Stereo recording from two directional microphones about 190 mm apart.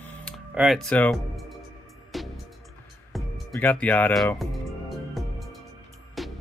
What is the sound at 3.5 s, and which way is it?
Speech, 10° left (ahead or behind).